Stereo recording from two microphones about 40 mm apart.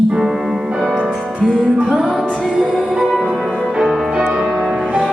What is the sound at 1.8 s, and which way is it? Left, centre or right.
Music, right.